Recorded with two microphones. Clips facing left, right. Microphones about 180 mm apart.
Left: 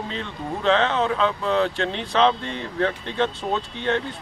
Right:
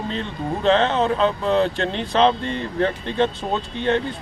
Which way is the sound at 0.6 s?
20° right (ahead or behind).